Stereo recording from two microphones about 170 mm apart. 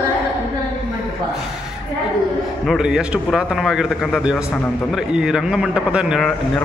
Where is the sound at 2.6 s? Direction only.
Centre (ahead or behind).